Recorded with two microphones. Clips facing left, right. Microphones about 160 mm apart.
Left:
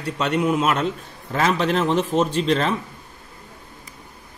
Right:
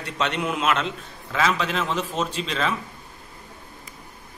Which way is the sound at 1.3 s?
40° left (ahead or behind).